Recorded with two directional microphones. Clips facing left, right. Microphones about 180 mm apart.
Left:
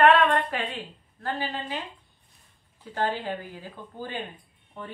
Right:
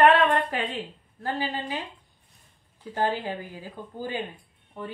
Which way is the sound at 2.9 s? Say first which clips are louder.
Right 1 dB; 10° right (ahead or behind).